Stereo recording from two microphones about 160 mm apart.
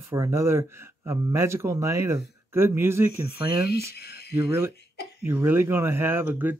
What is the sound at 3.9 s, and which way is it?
Speech, 90° left.